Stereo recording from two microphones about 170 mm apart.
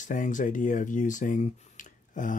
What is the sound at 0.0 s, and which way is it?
Speech, 50° left (ahead or behind).